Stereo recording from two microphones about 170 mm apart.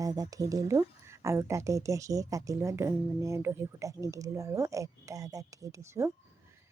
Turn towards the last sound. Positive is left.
turn(degrees=-20)  # may be behind; listen again after turning